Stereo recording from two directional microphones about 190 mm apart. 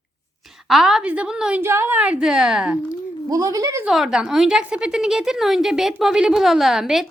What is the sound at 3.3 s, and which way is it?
Speech, 20° right (ahead or behind).